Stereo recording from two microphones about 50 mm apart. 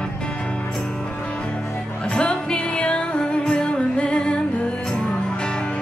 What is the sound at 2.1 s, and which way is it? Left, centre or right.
Music, centre.